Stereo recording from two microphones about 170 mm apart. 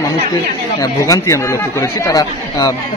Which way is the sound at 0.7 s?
20° left (ahead or behind).